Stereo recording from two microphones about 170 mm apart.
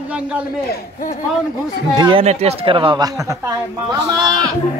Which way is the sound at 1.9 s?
25° right (ahead or behind).